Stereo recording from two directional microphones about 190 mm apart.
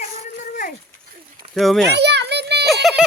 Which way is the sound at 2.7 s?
Centre (ahead or behind).